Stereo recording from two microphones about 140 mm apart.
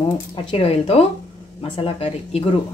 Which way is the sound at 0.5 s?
45° left (ahead or behind).